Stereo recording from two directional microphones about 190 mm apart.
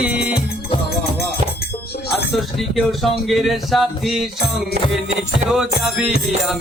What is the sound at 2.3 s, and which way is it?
Music, centre (ahead or behind).